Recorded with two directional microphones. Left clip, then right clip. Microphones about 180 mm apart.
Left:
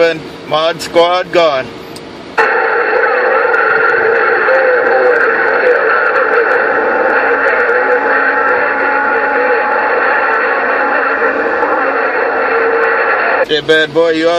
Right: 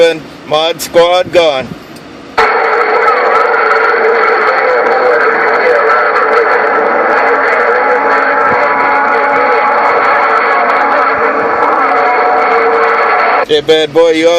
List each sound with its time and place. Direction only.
0.5 s speech: 35° right (ahead or behind)
2.4 s a sound: 45° right (ahead or behind)
13.5 s speech: 30° right (ahead or behind)